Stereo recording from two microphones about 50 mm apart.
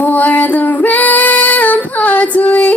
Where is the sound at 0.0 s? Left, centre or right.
Left.